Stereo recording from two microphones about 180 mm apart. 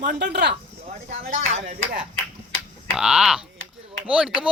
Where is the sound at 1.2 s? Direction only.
40° right (ahead or behind).